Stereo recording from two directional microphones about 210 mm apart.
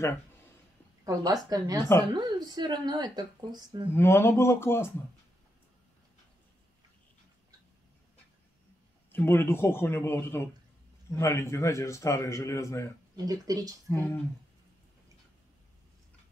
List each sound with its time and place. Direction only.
1.0 s a woman's voice: 15° right (ahead or behind)
1.8 s a man's voice: 10° left (ahead or behind)
2.1 s speech: 20° right (ahead or behind)
3.9 s a man's voice: 10° left (ahead or behind)
9.1 s a man's voice: 10° left (ahead or behind)
13.1 s a woman's voice: 15° right (ahead or behind)
13.8 s a man's voice: 10° left (ahead or behind)